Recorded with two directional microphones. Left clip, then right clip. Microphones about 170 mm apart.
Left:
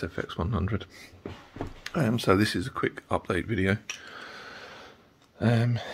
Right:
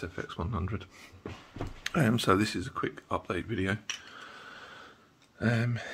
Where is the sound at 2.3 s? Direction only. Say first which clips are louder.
Left 3 dB; 30° left (ahead or behind).